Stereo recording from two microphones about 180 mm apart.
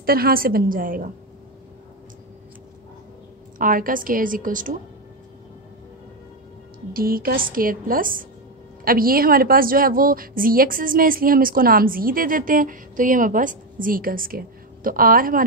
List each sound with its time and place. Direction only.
0.0 s a woman's voice: 55° right (ahead or behind)
3.5 s a woman's voice: 50° right (ahead or behind)
6.9 s a woman's voice: 55° right (ahead or behind)